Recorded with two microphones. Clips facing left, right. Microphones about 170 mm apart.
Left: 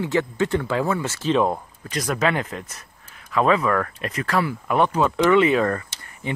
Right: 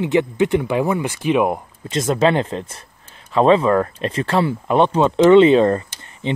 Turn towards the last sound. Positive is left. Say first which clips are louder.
# right 6 dB
turn(degrees=-25)  # may be behind; listen again after turning